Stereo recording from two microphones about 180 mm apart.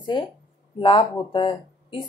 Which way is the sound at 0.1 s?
25° left (ahead or behind).